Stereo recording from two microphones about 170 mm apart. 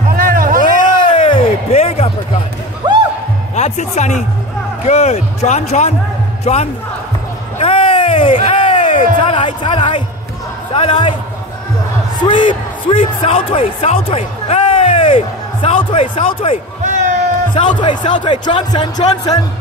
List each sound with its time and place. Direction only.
0.1 s music: 55° right (ahead or behind)
0.9 s a sound: 30° left (ahead or behind)
2.8 s music: 25° right (ahead or behind)
3.5 s a man's voice: 40° left (ahead or behind)
7.5 s a sound: 35° left (ahead or behind)
10.7 s a man's voice: 30° left (ahead or behind)
12.2 s speech: 30° left (ahead or behind)
16.8 s a sound: 45° right (ahead or behind)
17.6 s speech: 30° left (ahead or behind)